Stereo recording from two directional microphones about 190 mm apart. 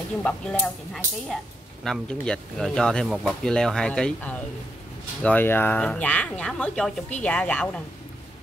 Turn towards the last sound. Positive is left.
turn(degrees=5)  # may be behind; listen again after turning